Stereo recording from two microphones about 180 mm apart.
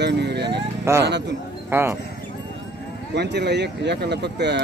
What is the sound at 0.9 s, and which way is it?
Speech, 15° right (ahead or behind).